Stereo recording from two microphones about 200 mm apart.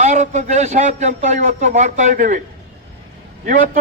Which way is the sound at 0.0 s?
35° right (ahead or behind).